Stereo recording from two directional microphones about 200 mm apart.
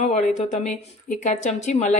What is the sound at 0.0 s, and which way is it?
Speech, 35° left (ahead or behind).